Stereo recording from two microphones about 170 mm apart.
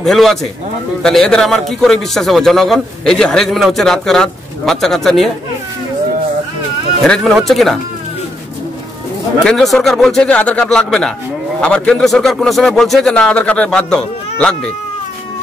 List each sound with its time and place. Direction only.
0.0 s a man's voice: centre (ahead or behind)
7.0 s a man's voice: centre (ahead or behind)
9.4 s a man's voice: 5° left (ahead or behind)